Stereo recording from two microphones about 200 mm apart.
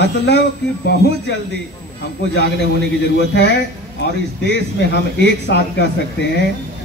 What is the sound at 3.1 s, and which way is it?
Speech, 60° left (ahead or behind).